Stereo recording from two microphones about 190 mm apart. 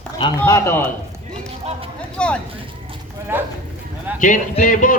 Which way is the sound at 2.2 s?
5° left (ahead or behind).